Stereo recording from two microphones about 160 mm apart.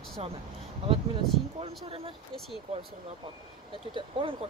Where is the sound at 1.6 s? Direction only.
40° right (ahead or behind).